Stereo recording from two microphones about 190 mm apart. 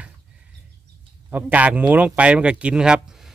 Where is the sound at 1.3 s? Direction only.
10° right (ahead or behind).